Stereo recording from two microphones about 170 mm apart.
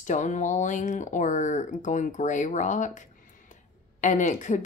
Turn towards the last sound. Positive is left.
turn(degrees=45)  # may be behind; listen again after turning